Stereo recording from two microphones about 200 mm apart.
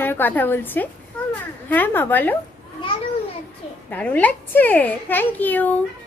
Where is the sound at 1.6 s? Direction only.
10° left (ahead or behind).